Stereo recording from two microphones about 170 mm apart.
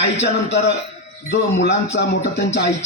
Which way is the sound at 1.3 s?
85° left.